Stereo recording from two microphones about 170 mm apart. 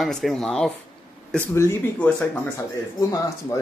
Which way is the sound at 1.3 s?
15° left (ahead or behind).